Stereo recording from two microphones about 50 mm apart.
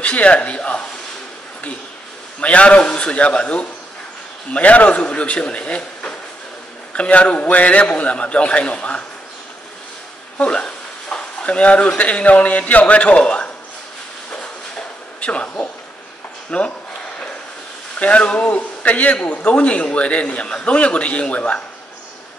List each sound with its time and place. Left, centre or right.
0.0 s a man's voice: left
2.4 s a man's voice: left
10.3 s speech: left
15.1 s speech: left
17.9 s a man's voice: left